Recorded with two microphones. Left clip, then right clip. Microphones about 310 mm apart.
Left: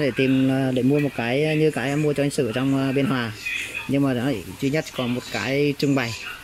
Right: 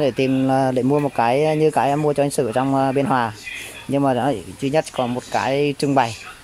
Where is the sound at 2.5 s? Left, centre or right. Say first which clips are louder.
Right 5 dB; right.